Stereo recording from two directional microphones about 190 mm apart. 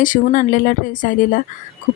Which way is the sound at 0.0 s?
45° left (ahead or behind).